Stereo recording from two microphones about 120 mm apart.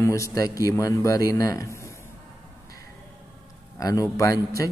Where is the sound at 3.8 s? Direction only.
30° left (ahead or behind).